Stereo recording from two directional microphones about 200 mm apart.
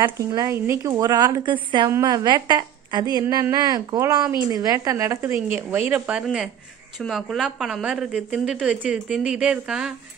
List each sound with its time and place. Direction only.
0.0 s a woman's voice: 15° right (ahead or behind)